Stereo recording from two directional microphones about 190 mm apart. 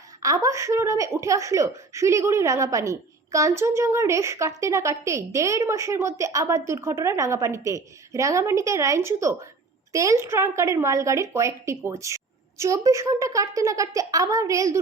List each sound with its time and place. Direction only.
0.2 s speech: 15° right (ahead or behind)